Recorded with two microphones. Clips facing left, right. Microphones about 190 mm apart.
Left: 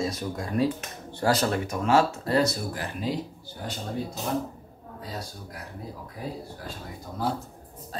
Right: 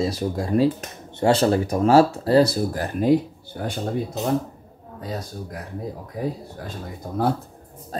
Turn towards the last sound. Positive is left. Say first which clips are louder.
# right 6 dB
turn(degrees=-55)  # may be behind; listen again after turning